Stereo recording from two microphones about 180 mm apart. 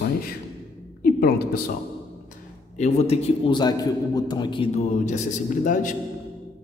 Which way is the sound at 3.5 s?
25° left (ahead or behind).